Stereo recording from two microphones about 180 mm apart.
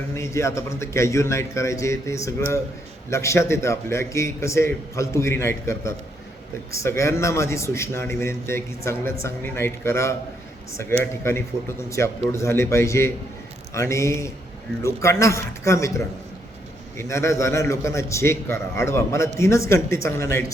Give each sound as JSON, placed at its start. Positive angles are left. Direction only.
{"t": 0.1, "sound": "a man's voice", "side_deg": 15}